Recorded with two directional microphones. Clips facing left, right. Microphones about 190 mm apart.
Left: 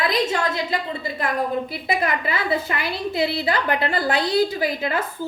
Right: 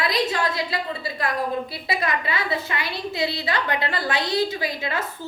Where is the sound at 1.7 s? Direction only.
25° left (ahead or behind).